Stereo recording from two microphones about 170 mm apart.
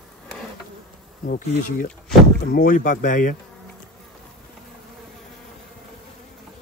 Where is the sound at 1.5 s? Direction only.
50° left (ahead or behind).